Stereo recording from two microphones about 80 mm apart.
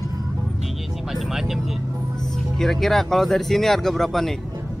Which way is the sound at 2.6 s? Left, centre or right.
Centre.